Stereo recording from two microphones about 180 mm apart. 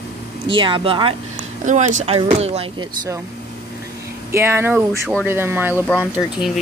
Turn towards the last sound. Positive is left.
turn(degrees=-5)  # may be behind; listen again after turning